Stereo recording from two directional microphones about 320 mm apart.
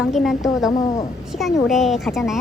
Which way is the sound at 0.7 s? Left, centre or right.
Centre.